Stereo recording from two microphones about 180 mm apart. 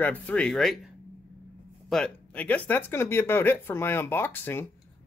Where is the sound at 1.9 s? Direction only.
5° left (ahead or behind).